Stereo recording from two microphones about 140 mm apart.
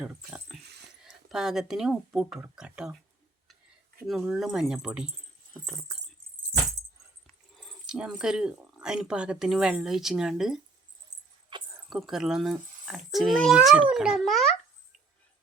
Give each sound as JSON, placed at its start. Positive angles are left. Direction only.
{"t": 0.0, "sound": "speech", "side_deg": -5}
{"t": 4.0, "sound": "speech", "side_deg": 0}
{"t": 7.3, "sound": "speech", "side_deg": 0}
{"t": 11.5, "sound": "a sound", "side_deg": -35}
{"t": 11.9, "sound": "speech", "side_deg": 0}